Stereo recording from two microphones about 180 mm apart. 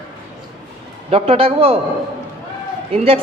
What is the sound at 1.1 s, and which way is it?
Speech, 30° right (ahead or behind).